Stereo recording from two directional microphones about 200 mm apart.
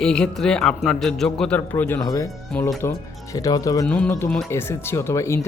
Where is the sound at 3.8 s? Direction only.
5° left (ahead or behind).